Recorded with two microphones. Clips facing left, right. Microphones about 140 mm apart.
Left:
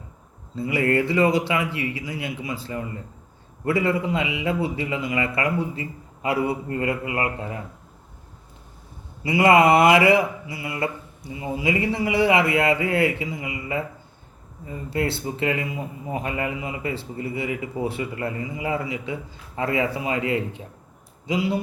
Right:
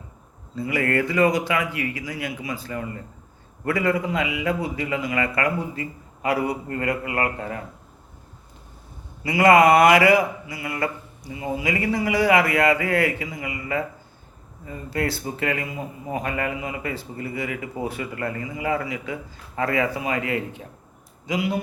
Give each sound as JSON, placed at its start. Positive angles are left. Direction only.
{"t": 0.5, "sound": "speech", "side_deg": 25}
{"t": 9.2, "sound": "speech", "side_deg": 25}